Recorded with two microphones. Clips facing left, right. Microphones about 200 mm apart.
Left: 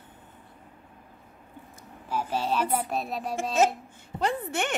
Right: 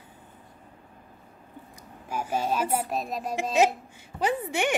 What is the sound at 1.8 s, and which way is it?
A woman's voice, 10° right (ahead or behind).